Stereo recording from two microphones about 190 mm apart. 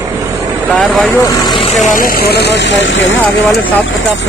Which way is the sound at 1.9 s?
45° left (ahead or behind).